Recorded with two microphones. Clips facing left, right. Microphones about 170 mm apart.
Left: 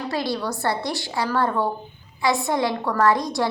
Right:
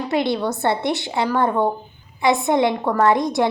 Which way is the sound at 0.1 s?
20° right (ahead or behind).